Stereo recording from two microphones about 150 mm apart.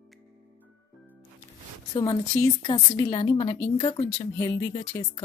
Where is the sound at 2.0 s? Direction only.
30° left (ahead or behind).